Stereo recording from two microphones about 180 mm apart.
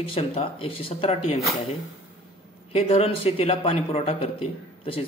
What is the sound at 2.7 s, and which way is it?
A man's voice, 30° left (ahead or behind).